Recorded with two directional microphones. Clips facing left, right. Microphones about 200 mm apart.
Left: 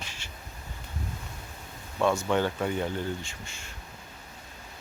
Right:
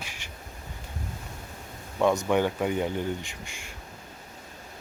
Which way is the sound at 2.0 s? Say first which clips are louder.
Right 2 dB; 15° right (ahead or behind).